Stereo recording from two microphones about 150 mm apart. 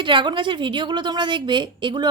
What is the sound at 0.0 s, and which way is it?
A woman's voice, 35° right (ahead or behind).